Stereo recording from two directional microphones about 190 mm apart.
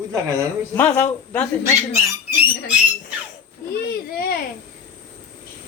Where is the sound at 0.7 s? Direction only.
10° left (ahead or behind).